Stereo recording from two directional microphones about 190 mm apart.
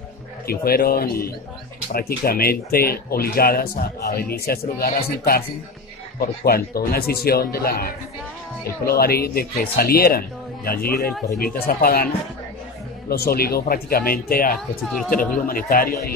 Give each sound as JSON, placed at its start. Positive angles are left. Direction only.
{"t": 0.5, "sound": "speech", "side_deg": 50}
{"t": 13.1, "sound": "speech", "side_deg": 55}
{"t": 14.9, "sound": "speech", "side_deg": 0}
{"t": 15.1, "sound": "speech", "side_deg": 50}